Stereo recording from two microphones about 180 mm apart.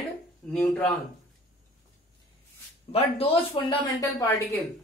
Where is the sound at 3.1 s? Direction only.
30° left (ahead or behind).